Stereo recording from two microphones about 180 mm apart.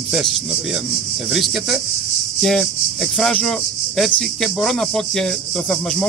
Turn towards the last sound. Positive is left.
turn(degrees=5)  # may be behind; listen again after turning